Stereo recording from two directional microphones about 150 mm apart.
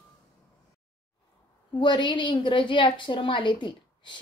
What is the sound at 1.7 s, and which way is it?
A woman's voice, 30° left (ahead or behind).